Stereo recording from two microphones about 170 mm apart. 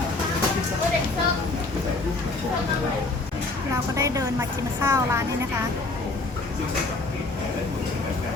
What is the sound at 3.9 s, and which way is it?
Speech, 20° right (ahead or behind).